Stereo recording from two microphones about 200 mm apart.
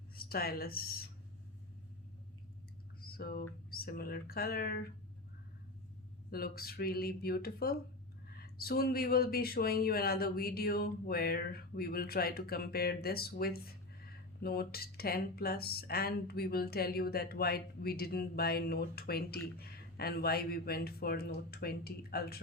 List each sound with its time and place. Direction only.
0.1 s speech: 50° left (ahead or behind)
3.0 s a sound: 50° left (ahead or behind)
3.7 s speech: 50° left (ahead or behind)
6.3 s speech: 50° left (ahead or behind)